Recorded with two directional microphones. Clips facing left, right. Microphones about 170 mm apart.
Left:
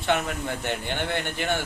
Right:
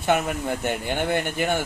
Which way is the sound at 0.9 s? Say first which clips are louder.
Right 4 dB; 45° right (ahead or behind).